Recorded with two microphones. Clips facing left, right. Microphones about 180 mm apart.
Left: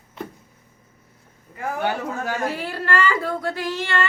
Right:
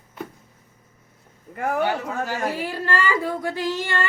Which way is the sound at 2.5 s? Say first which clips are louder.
Left 1 dB; 15° right (ahead or behind).